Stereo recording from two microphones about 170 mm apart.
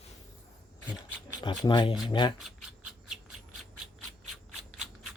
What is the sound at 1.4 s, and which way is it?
Speech, 25° left (ahead or behind).